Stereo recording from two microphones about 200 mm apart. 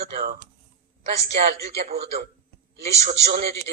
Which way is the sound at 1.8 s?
30° right (ahead or behind).